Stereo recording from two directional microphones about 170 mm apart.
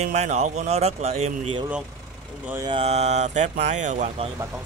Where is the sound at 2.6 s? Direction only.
35° right (ahead or behind).